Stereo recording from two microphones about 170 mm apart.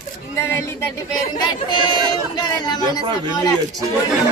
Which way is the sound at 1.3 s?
25° left (ahead or behind).